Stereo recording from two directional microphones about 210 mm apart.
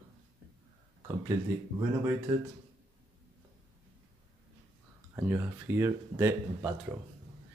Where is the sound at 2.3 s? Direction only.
20° right (ahead or behind).